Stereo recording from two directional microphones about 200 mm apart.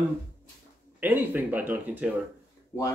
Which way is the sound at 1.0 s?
10° right (ahead or behind).